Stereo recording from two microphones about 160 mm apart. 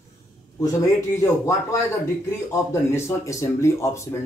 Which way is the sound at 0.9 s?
20° left (ahead or behind).